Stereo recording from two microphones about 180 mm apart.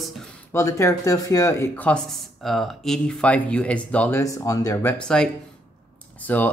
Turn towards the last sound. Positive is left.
turn(degrees=10)  # may be behind; listen again after turning